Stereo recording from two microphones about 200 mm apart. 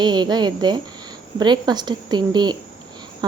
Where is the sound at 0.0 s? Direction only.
20° right (ahead or behind).